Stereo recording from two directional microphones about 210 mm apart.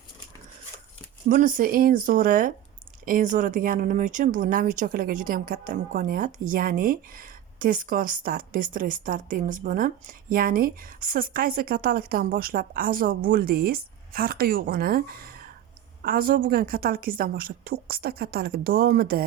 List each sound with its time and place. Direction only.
1.3 s speech: 40° right (ahead or behind)